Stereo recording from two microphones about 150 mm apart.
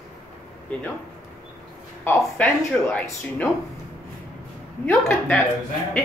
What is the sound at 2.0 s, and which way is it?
Speech, 10° left (ahead or behind).